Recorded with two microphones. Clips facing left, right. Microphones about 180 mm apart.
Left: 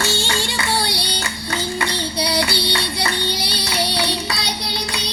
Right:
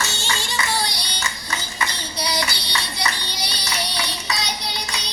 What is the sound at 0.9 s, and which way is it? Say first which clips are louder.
Child singing: left 5 dB; 65° left (ahead or behind).